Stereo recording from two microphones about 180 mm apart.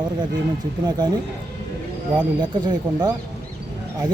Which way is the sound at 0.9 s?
25° right (ahead or behind).